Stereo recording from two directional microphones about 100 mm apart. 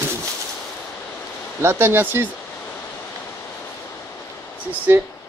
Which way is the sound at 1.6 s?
25° right (ahead or behind).